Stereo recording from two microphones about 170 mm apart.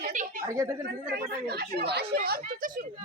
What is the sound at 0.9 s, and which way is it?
Speech, 65° right (ahead or behind).